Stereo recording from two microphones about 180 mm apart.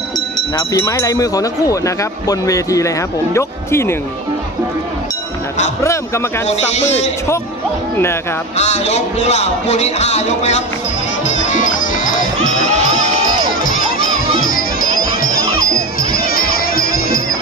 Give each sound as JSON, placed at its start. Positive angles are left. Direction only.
{"t": 0.6, "sound": "speech", "side_deg": 20}
{"t": 6.5, "sound": "speech", "side_deg": 40}
{"t": 8.5, "sound": "speech", "side_deg": 40}
{"t": 11.2, "sound": "music", "side_deg": 45}
{"t": 13.7, "sound": "crowd", "side_deg": 50}
{"t": 16.0, "sound": "music", "side_deg": 55}